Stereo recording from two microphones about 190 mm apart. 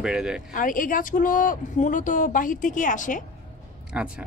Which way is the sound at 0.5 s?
45° left (ahead or behind).